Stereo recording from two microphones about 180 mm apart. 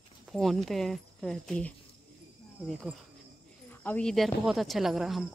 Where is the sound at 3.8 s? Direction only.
5° left (ahead or behind).